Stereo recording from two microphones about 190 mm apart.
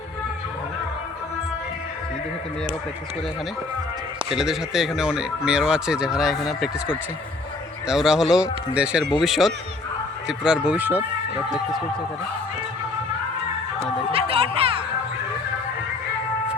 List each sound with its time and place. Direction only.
4.3 s speech: centre (ahead or behind)
7.9 s speech: 5° right (ahead or behind)
14.1 s speech: 30° right (ahead or behind)